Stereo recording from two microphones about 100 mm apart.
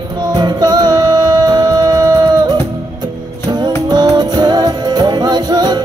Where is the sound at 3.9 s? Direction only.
45° right (ahead or behind).